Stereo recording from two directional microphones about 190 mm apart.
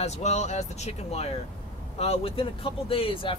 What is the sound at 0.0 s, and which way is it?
Speech, 35° left (ahead or behind).